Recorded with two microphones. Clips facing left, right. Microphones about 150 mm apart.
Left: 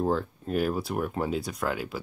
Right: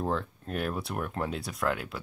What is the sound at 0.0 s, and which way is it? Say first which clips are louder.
Speech: left 4 dB; centre (ahead or behind).